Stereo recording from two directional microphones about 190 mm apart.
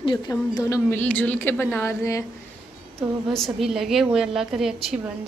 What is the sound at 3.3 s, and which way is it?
A woman's voice, centre (ahead or behind).